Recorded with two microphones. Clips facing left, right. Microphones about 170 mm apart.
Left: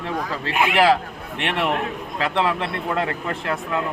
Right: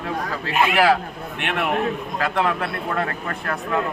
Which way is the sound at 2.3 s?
25° left (ahead or behind).